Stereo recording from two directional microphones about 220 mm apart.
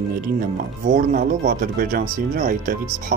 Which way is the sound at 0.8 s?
35° right (ahead or behind).